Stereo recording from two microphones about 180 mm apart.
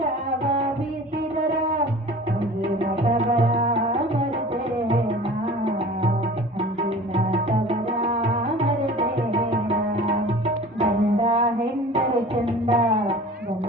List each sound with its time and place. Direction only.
3.3 s music: 30° right (ahead or behind)
7.1 s music: 35° right (ahead or behind)
9.0 s tabla: 30° right (ahead or behind)
11.9 s music: 35° right (ahead or behind)